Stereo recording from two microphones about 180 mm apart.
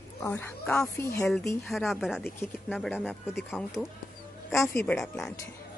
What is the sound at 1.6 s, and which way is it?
A woman's voice, centre (ahead or behind).